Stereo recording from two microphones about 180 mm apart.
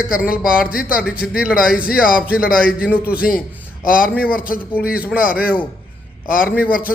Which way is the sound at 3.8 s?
50° left (ahead or behind).